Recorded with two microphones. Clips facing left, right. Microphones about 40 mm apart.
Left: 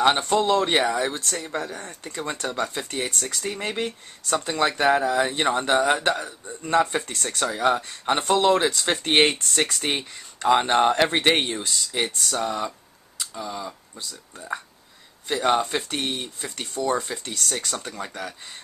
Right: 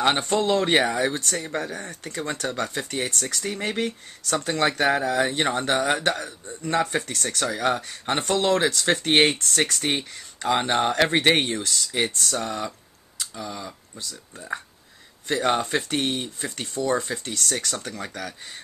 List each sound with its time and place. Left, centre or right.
0.0 s speech: centre
13.2 s typing: centre
13.6 s speech: centre